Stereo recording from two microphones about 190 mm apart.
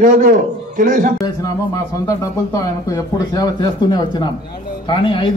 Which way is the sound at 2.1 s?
20° left (ahead or behind).